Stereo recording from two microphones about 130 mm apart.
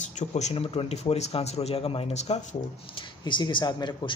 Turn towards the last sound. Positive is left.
turn(degrees=35)  # may be behind; listen again after turning